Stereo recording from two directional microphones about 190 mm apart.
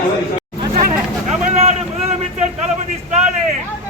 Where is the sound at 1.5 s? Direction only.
35° right (ahead or behind).